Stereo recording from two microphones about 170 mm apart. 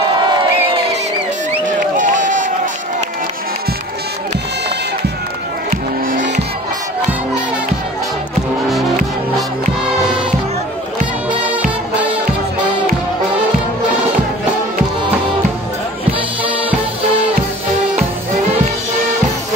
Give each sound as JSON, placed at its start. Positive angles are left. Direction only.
{"t": 2.0, "sound": "run", "side_deg": -50}
{"t": 5.7, "sound": "music", "side_deg": -50}